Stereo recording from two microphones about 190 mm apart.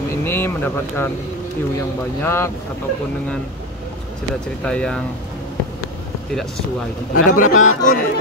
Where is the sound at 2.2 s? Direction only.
15° left (ahead or behind).